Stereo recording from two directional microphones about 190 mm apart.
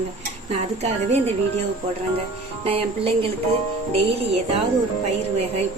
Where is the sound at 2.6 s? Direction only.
30° right (ahead or behind).